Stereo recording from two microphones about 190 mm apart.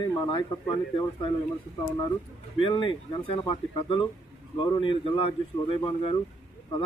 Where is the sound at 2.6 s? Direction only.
25° left (ahead or behind).